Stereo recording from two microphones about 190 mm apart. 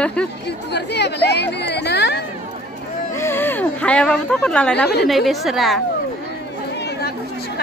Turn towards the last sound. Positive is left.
turn(degrees=0)  # may be behind; listen again after turning